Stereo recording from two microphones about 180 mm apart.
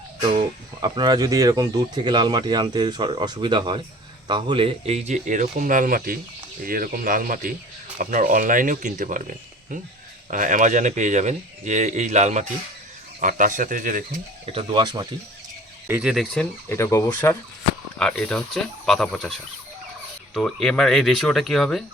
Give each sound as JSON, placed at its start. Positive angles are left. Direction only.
{"t": 0.2, "sound": "speech", "side_deg": -25}
{"t": 10.2, "sound": "speech", "side_deg": -45}
{"t": 14.4, "sound": "speech", "side_deg": -30}
{"t": 15.9, "sound": "speech", "side_deg": -5}
{"t": 18.0, "sound": "speech", "side_deg": 5}